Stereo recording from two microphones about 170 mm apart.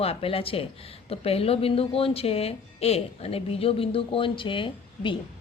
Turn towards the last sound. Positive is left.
turn(degrees=30)  # may be behind; listen again after turning